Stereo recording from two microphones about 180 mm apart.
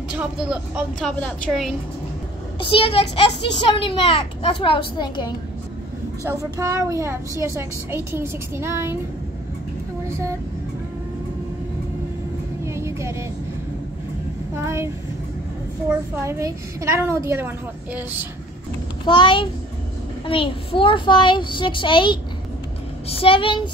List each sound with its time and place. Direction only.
0.1 s speech: 5° right (ahead or behind)
2.6 s a child's voice: 30° left (ahead or behind)
6.2 s a child's voice: 15° right (ahead or behind)
12.6 s vehicle: 15° right (ahead or behind)
14.5 s a woman's voice: 15° right (ahead or behind)
15.9 s a child's voice: 15° right (ahead or behind)
19.0 s a child's voice: 25° left (ahead or behind)